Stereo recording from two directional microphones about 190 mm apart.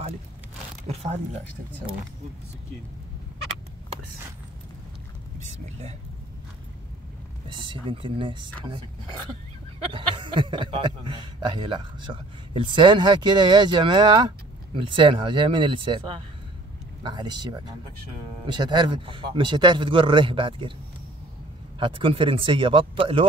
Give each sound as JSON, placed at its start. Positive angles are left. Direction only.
{"t": 0.8, "sound": "speech", "side_deg": -35}
{"t": 5.4, "sound": "speech", "side_deg": -35}
{"t": 7.4, "sound": "a man's voice", "side_deg": -25}
{"t": 21.7, "sound": "a man's voice", "side_deg": -25}